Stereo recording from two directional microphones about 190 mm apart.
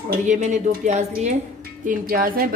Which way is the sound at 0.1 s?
40° right (ahead or behind).